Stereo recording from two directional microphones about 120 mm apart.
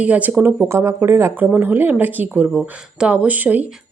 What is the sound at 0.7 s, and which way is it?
Speech, 20° right (ahead or behind).